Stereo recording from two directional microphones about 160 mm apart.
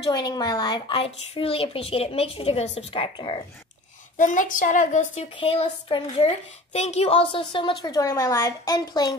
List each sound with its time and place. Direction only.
0.1 s speech: 25° left (ahead or behind)
4.2 s a woman's voice: 55° left (ahead or behind)
5.3 s speech: 35° left (ahead or behind)
7.8 s speech: 20° left (ahead or behind)